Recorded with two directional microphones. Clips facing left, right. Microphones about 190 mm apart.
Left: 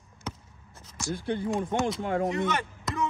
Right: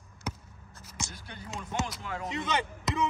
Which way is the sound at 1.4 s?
55° left (ahead or behind).